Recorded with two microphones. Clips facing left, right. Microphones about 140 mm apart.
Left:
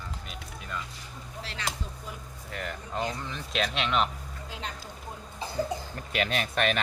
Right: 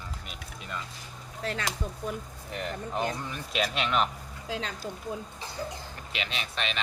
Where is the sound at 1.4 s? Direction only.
50° right (ahead or behind).